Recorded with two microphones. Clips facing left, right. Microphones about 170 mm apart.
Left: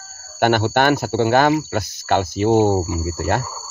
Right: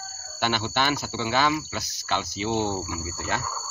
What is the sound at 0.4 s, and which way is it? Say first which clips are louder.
Speech: left 10 dB; 55° left (ahead or behind).